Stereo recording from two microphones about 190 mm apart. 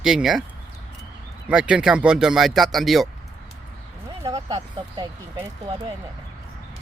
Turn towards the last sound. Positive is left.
turn(degrees=-15)  # may be behind; listen again after turning